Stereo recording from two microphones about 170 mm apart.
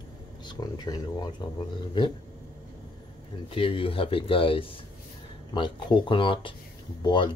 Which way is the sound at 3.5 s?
30° left (ahead or behind).